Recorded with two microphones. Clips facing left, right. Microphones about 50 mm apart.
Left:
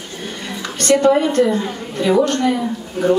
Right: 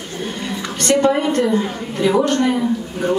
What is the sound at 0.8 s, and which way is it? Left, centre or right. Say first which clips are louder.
A woman's voice: left 2 dB; right.